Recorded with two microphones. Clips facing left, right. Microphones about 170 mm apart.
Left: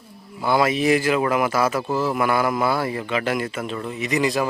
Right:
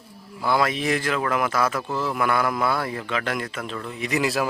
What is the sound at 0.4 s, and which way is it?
A man's voice, 5° left (ahead or behind).